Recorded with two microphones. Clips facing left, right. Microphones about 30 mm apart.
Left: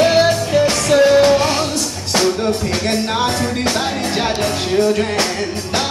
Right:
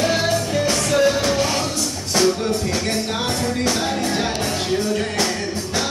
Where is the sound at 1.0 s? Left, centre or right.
Left.